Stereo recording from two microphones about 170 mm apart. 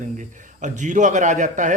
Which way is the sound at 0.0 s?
45° right (ahead or behind).